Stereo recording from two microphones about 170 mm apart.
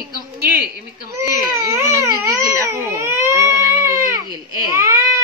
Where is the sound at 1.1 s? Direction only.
15° right (ahead or behind).